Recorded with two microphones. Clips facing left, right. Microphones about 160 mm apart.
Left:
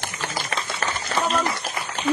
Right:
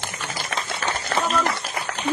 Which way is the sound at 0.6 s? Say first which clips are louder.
Right 1 dB; 55° right (ahead or behind).